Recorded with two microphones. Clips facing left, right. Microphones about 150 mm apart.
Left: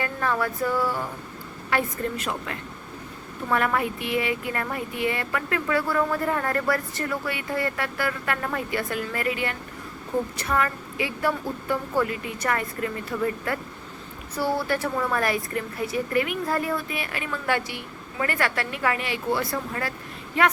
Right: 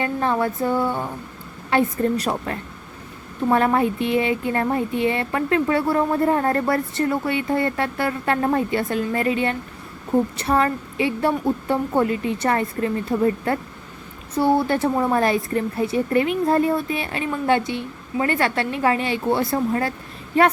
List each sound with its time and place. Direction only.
0.0 s speech: 25° right (ahead or behind)
1.7 s a woman's voice: 35° right (ahead or behind)